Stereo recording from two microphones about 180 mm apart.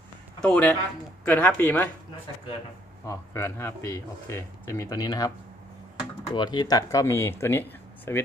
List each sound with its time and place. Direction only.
0.4 s speech: 5° left (ahead or behind)
3.1 s speech: 15° left (ahead or behind)
6.3 s speech: 25° left (ahead or behind)